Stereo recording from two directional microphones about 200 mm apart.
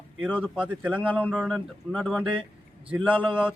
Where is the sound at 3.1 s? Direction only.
25° right (ahead or behind).